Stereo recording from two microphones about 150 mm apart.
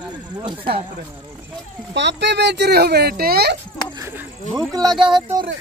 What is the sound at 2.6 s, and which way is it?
Speech, 90° right.